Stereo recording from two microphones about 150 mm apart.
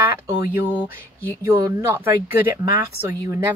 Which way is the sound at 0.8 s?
15° right (ahead or behind).